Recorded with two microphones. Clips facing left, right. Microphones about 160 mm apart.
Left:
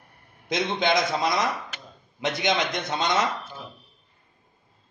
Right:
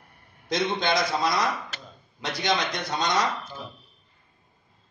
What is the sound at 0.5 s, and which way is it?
A man's voice, 20° left (ahead or behind).